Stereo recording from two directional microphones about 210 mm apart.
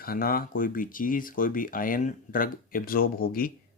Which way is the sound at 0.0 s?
45° left (ahead or behind).